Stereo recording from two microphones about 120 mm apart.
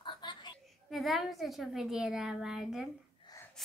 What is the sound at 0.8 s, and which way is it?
A child's voice, centre (ahead or behind).